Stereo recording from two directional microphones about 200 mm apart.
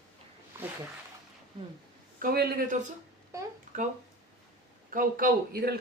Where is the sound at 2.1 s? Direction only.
45° right (ahead or behind).